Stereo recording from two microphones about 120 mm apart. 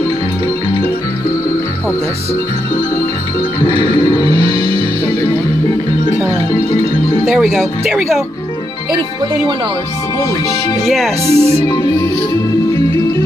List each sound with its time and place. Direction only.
3.6 s speech: 40° left (ahead or behind)
4.3 s music: 50° right (ahead or behind)
7.2 s speech: 5° right (ahead or behind)
11.2 s speech: 30° left (ahead or behind)